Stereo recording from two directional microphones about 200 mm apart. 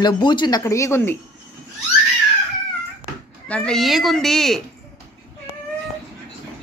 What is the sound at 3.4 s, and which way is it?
A woman's voice, 5° left (ahead or behind).